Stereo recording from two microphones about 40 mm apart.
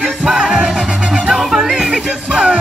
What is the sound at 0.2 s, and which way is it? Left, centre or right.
Music, centre.